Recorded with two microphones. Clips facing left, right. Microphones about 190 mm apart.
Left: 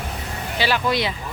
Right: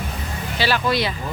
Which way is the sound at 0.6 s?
20° left (ahead or behind).